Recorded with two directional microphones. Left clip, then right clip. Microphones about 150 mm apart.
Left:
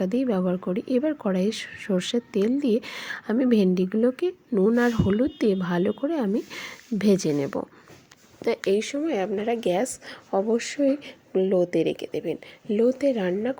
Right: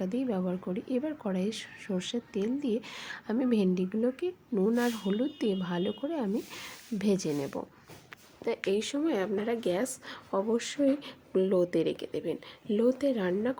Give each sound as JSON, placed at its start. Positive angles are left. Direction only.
{"t": 0.0, "sound": "speech", "side_deg": 30}
{"t": 8.7, "sound": "a woman's voice", "side_deg": 15}